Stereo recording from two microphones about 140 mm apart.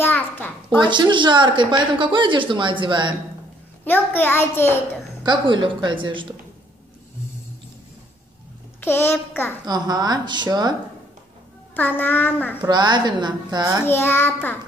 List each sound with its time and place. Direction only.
0.0 s a sound: 15° left (ahead or behind)
0.8 s a woman's voice: 35° right (ahead or behind)
3.8 s a child's voice: 15° left (ahead or behind)
5.2 s a woman's voice: 35° right (ahead or behind)
8.8 s a child's voice: 15° left (ahead or behind)
9.7 s a woman's voice: 30° right (ahead or behind)
11.7 s a child's voice: 15° left (ahead or behind)
12.6 s a woman's voice: 30° right (ahead or behind)
13.8 s a child's voice: 15° left (ahead or behind)